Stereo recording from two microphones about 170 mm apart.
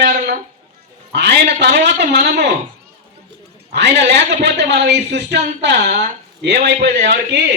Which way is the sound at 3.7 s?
90° right.